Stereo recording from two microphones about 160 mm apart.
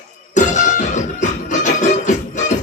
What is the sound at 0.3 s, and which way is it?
Music, 50° left (ahead or behind).